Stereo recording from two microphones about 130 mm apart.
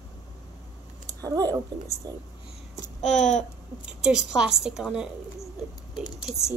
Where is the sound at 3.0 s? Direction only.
70° left (ahead or behind).